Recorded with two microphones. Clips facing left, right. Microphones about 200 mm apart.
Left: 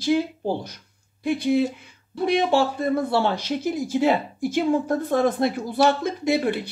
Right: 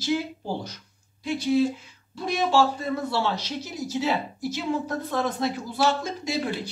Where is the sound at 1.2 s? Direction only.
55° left (ahead or behind).